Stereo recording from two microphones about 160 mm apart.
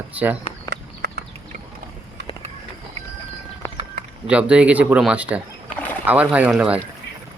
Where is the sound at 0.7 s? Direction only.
90° right.